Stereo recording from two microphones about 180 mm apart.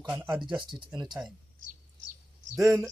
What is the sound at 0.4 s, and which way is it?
Speech, 25° right (ahead or behind).